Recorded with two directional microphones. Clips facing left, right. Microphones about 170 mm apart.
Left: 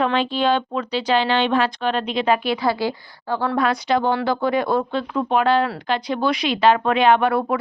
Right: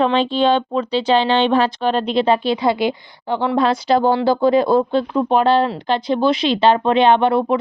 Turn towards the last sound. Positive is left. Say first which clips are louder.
# right 3 dB
turn(degrees=-25)  # may be behind; listen again after turning